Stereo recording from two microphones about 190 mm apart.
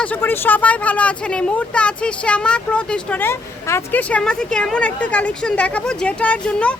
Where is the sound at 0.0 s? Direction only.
10° left (ahead or behind).